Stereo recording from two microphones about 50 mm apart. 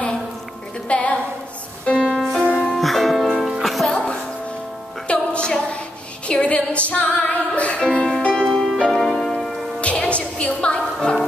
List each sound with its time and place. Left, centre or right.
0.8 s a sound: left
1.9 s music: centre
2.8 s music: centre
3.9 s music: centre
8.4 s music: centre
9.8 s music: left